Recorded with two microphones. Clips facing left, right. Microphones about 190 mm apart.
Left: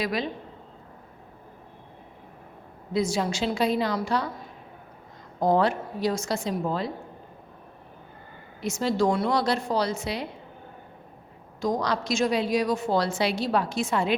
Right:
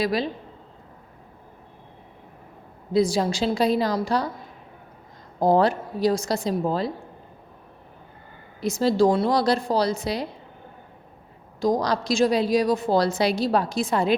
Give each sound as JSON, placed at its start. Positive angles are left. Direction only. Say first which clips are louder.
{"t": 0.0, "sound": "a woman's voice", "louder": "right 4 dB", "side_deg": -35}
{"t": 2.9, "sound": "a woman's voice", "louder": "right 5 dB", "side_deg": -35}
{"t": 5.4, "sound": "a woman's voice", "louder": "right 3 dB", "side_deg": -35}
{"t": 8.6, "sound": "a woman's voice", "louder": "right 5 dB", "side_deg": -35}
{"t": 11.6, "sound": "a woman's voice", "louder": "right 4 dB", "side_deg": -35}